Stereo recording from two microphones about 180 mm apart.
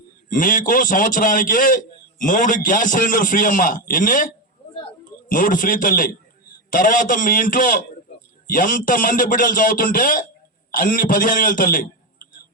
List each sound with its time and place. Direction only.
0.3 s a man's voice: 50° left (ahead or behind)
5.3 s a man's voice: 50° left (ahead or behind)